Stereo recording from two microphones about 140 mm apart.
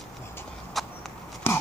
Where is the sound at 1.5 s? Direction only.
15° left (ahead or behind).